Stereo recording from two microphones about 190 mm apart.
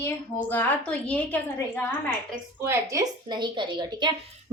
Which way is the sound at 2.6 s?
20° right (ahead or behind).